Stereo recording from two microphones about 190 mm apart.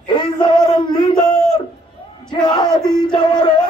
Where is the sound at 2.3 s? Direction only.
25° left (ahead or behind).